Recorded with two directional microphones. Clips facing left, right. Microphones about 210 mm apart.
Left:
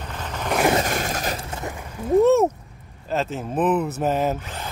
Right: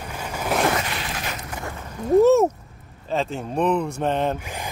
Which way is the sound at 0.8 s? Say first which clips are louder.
Left 5 dB; 45° left (ahead or behind).